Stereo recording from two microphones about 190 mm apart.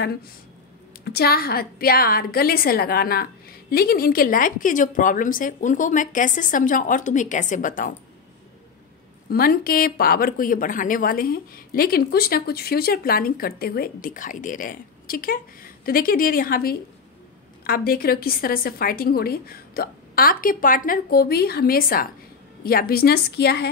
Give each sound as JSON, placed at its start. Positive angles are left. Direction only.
{"t": 1.0, "sound": "a woman's voice", "side_deg": 55}
{"t": 9.3, "sound": "a woman's voice", "side_deg": 50}